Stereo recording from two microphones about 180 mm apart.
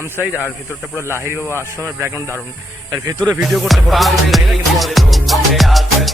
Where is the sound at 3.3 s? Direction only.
Centre (ahead or behind).